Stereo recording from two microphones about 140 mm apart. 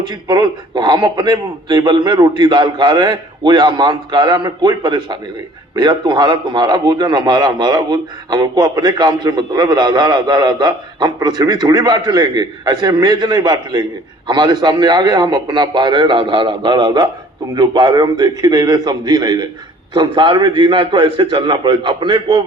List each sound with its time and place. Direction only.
0.0 s a man's voice: 30° right (ahead or behind)